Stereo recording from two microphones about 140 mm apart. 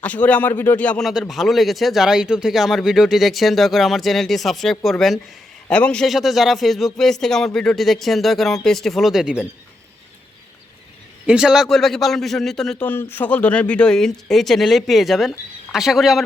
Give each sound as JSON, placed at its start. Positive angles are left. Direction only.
{"t": 0.0, "sound": "a man's voice", "side_deg": 10}
{"t": 11.3, "sound": "a man's voice", "side_deg": -5}
{"t": 12.9, "sound": "a man's voice", "side_deg": 15}